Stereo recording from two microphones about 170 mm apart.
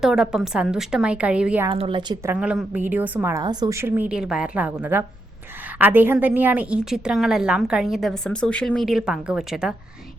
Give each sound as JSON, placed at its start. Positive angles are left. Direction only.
{"t": 0.0, "sound": "a woman's voice", "side_deg": -5}
{"t": 1.7, "sound": "a woman's voice", "side_deg": -30}
{"t": 2.2, "sound": "a woman's voice", "side_deg": -10}